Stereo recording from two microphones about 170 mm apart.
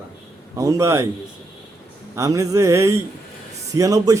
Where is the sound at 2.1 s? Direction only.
20° right (ahead or behind).